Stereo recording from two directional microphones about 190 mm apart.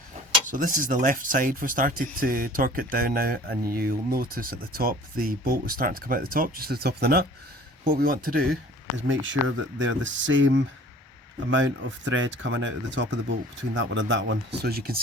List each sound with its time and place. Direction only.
0.4 s speech: 45° right (ahead or behind)
9.0 s speech: 85° right; by 15.0 s 50° right (ahead or behind)